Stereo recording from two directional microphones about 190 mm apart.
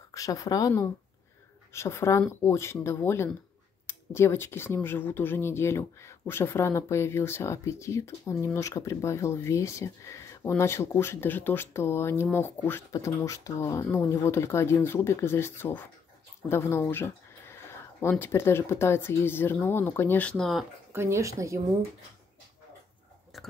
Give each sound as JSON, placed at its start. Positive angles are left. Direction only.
{"t": 0.1, "sound": "speech", "side_deg": 20}
{"t": 20.9, "sound": "speech", "side_deg": -15}
{"t": 23.3, "sound": "chewing", "side_deg": 0}